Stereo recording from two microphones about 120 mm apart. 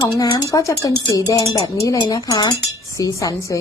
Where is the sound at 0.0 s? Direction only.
30° left (ahead or behind).